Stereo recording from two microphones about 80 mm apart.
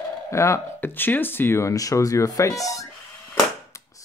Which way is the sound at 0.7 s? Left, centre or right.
Left.